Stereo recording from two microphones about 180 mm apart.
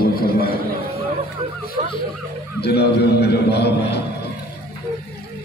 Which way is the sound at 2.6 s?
65° left (ahead or behind).